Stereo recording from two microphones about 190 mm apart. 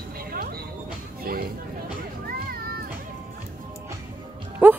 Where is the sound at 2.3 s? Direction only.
50° right (ahead or behind).